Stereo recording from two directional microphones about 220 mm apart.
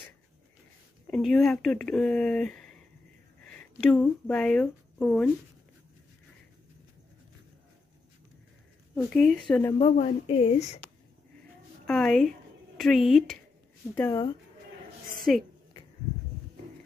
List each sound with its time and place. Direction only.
1.1 s speech: centre (ahead or behind)
3.9 s speech: 5° left (ahead or behind)
8.9 s a woman's voice: centre (ahead or behind)
9.9 s speech: 30° left (ahead or behind)
11.8 s a woman's voice: 5° left (ahead or behind)
15.3 s speech: centre (ahead or behind)